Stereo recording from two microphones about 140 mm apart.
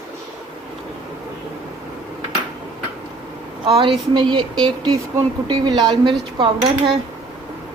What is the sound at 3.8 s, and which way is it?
Speech, 35° right (ahead or behind).